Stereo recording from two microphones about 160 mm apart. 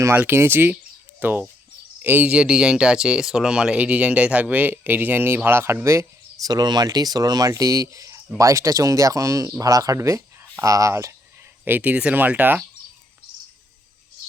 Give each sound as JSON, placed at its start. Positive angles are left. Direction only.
{"t": 0.0, "sound": "speech", "side_deg": -15}